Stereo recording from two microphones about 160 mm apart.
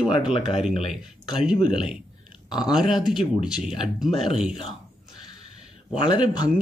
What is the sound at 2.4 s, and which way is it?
Speech, 25° left (ahead or behind).